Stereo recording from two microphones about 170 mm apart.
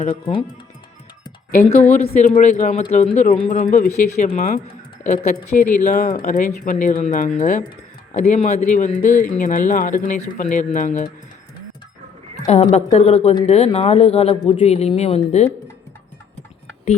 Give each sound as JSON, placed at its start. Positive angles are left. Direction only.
{"t": 0.1, "sound": "speech", "side_deg": 30}
{"t": 1.5, "sound": "speech", "side_deg": 50}
{"t": 12.5, "sound": "speech", "side_deg": 40}